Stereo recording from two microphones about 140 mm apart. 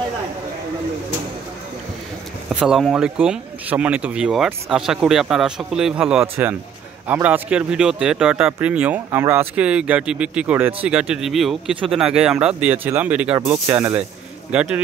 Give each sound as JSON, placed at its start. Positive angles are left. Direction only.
{"t": 2.5, "sound": "speech", "side_deg": -5}